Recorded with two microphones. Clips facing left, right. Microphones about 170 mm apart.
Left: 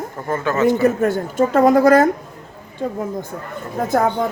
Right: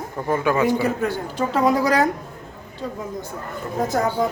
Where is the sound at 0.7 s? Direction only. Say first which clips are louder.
Left 5 dB; 50° left (ahead or behind).